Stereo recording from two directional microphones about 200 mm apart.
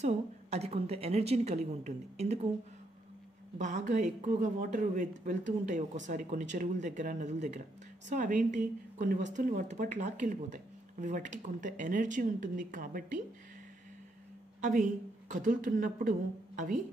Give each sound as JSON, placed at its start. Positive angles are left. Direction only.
{"t": 0.0, "sound": "a woman's voice", "side_deg": -30}
{"t": 3.5, "sound": "a woman's voice", "side_deg": -40}
{"t": 14.6, "sound": "a woman's voice", "side_deg": -40}